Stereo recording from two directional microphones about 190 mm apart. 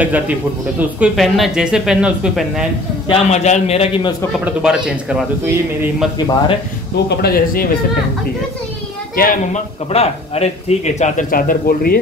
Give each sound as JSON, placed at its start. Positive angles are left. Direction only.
{"t": 0.0, "sound": "speech", "side_deg": -10}
{"t": 3.1, "sound": "speech", "side_deg": 35}
{"t": 4.5, "sound": "speech", "side_deg": -5}
{"t": 6.1, "sound": "speech", "side_deg": 25}
{"t": 7.1, "sound": "speech", "side_deg": 55}
{"t": 9.1, "sound": "speech", "side_deg": 50}
{"t": 9.8, "sound": "speech", "side_deg": 30}